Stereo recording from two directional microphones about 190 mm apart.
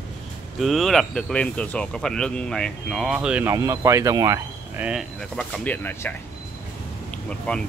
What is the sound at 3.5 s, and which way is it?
Speech, 15° right (ahead or behind).